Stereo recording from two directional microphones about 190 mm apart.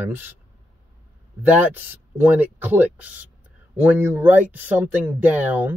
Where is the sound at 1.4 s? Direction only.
10° right (ahead or behind).